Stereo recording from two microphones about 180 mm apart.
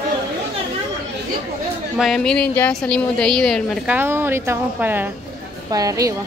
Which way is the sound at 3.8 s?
10° right (ahead or behind).